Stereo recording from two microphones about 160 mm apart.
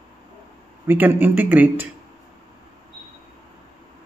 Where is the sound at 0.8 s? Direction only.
10° right (ahead or behind).